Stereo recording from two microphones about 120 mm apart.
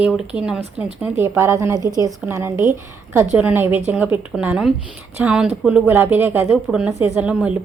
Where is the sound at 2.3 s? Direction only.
20° right (ahead or behind).